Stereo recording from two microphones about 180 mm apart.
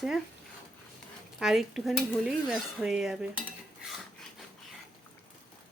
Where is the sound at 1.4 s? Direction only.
Centre (ahead or behind).